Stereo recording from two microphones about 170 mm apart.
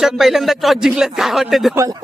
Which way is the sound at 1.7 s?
15° right (ahead or behind).